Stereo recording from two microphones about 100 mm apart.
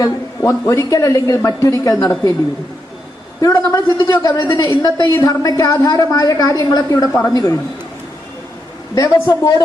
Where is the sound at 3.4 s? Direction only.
35° left (ahead or behind).